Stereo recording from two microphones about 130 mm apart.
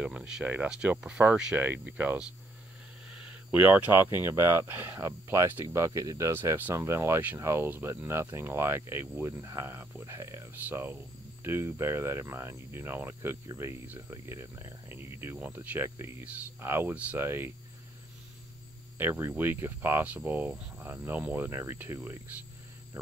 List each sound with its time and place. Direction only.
0.0 s cricket: 10° right (ahead or behind)
3.1 s speech: 10° right (ahead or behind)
13.9 s cricket: 25° right (ahead or behind)
18.9 s cricket: 15° right (ahead or behind)